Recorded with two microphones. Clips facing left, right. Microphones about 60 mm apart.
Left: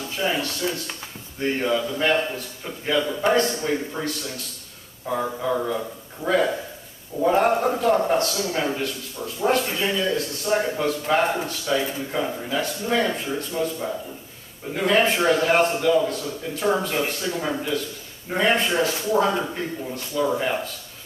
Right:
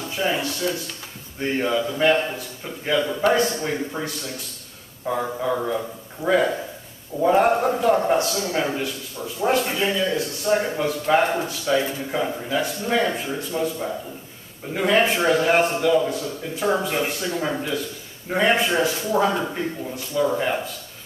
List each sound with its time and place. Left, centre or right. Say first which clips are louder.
0.1 s a man's voice: right 1 dB; centre
6.2 s speech: right 2 dB; right
7.2 s a man's voice: right 2 dB; centre